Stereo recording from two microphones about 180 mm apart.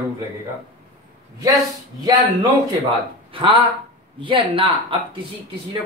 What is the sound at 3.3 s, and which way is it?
Speech, 30° right (ahead or behind).